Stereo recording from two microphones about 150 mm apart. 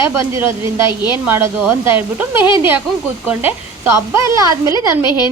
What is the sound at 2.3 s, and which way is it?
Speech, 35° left (ahead or behind).